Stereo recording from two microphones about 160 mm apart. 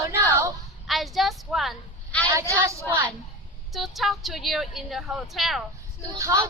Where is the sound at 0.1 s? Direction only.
20° right (ahead or behind).